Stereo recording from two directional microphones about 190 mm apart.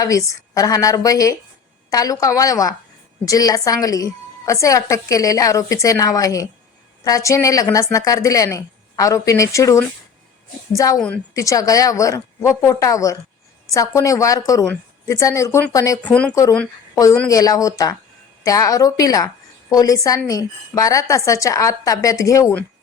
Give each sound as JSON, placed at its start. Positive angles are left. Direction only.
{"t": 0.0, "sound": "a woman's voice", "side_deg": 15}
{"t": 10.9, "sound": "a woman's voice", "side_deg": 5}
{"t": 11.3, "sound": "a woman's voice", "side_deg": 15}
{"t": 16.0, "sound": "a woman's voice", "side_deg": 5}
{"t": 16.9, "sound": "a woman's voice", "side_deg": 15}